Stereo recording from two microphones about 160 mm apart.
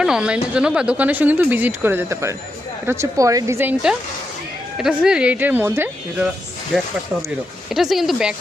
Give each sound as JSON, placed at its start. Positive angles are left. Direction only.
{"t": 0.0, "sound": "speech", "side_deg": -5}
{"t": 7.7, "sound": "speech", "side_deg": 0}